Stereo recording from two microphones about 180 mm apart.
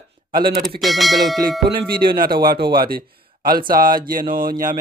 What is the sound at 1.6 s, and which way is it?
Speech, 60° right (ahead or behind).